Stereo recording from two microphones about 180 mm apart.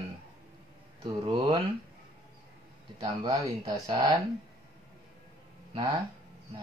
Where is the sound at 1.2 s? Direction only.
25° right (ahead or behind).